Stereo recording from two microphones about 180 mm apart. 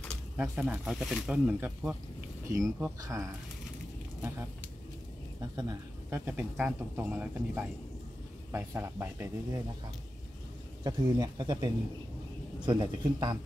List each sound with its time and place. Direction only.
0.4 s speech: 5° right (ahead or behind)
5.6 s speech: 20° right (ahead or behind)
6.2 s speech: 5° right (ahead or behind)
10.8 s speech: 20° right (ahead or behind)